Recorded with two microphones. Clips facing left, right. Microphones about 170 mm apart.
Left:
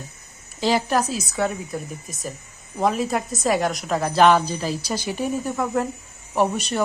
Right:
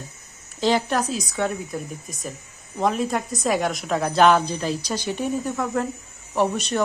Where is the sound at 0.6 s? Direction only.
5° left (ahead or behind).